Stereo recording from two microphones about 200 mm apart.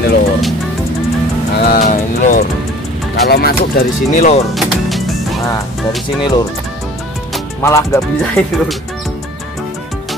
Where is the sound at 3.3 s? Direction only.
50° left (ahead or behind).